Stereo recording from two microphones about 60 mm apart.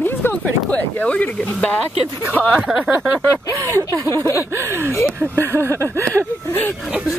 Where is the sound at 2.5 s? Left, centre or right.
Centre.